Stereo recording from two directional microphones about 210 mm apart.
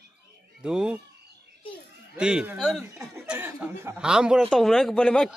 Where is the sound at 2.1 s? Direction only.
5° right (ahead or behind).